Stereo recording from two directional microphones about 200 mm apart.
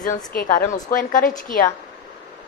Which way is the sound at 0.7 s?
40° left (ahead or behind).